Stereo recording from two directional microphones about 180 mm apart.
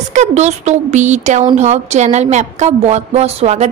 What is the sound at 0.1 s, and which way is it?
A woman's voice, 40° right (ahead or behind).